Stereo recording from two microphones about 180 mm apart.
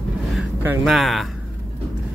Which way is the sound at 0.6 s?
10° right (ahead or behind).